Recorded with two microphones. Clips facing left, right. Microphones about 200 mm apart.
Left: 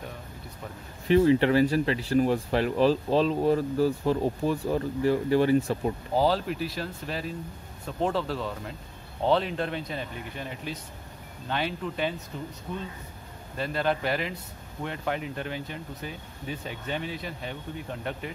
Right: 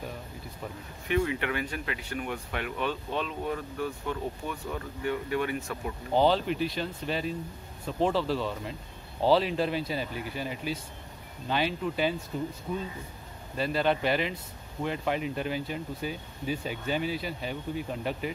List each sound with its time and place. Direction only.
1.0 s speech: 30° left (ahead or behind)
6.1 s speech: centre (ahead or behind)
13.6 s speech: centre (ahead or behind)